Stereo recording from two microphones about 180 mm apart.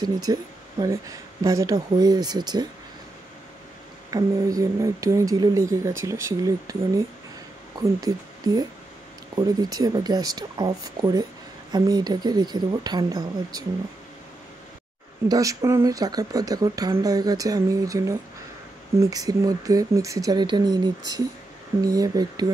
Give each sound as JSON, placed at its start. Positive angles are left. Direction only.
{"t": 0.0, "sound": "speech", "side_deg": -20}
{"t": 4.1, "sound": "speech", "side_deg": -20}
{"t": 8.0, "sound": "speech", "side_deg": -20}
{"t": 15.2, "sound": "speech", "side_deg": -20}